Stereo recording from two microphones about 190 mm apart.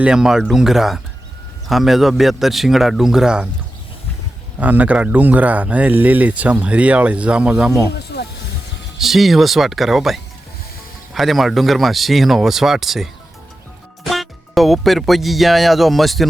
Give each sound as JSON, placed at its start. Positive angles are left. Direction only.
{"t": 0.0, "sound": "speech", "side_deg": -5}
{"t": 4.6, "sound": "speech", "side_deg": -10}
{"t": 7.9, "sound": "snake", "side_deg": 60}
{"t": 9.0, "sound": "speech", "side_deg": 0}